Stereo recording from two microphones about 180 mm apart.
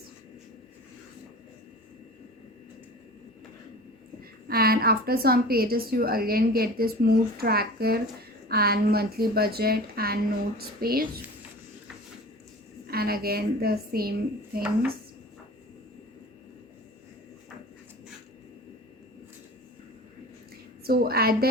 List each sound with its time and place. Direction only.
4.2 s a woman's voice: 55° right (ahead or behind)
12.9 s a woman's voice: 55° right (ahead or behind)
20.8 s a woman's voice: 55° right (ahead or behind)